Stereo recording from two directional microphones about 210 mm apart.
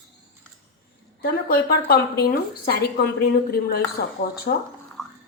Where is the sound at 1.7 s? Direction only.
45° left (ahead or behind).